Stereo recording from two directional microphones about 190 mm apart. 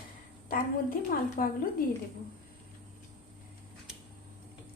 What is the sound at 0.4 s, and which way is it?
A woman's voice, 45° left (ahead or behind).